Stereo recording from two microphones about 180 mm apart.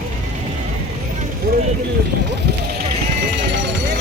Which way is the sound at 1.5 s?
55° right (ahead or behind).